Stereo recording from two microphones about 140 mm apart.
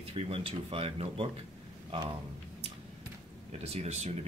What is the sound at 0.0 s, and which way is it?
Speech, 40° right (ahead or behind).